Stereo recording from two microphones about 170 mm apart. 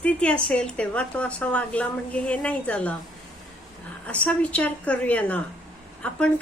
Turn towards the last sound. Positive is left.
turn(degrees=5)  # may be behind; listen again after turning